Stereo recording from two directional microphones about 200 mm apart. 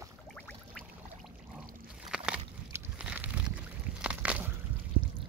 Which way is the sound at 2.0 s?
5° right (ahead or behind).